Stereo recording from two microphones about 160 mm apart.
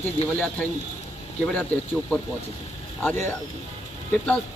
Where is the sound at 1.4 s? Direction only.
10° left (ahead or behind).